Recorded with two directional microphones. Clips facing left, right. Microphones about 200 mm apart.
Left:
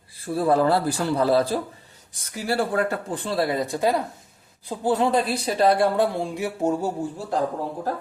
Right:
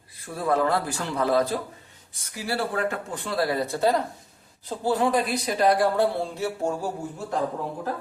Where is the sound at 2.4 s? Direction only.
45° left (ahead or behind); by 7.1 s 20° left (ahead or behind).